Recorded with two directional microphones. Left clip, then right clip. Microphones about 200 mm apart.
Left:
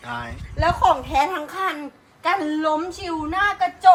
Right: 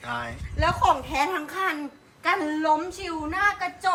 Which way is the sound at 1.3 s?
55° left (ahead or behind).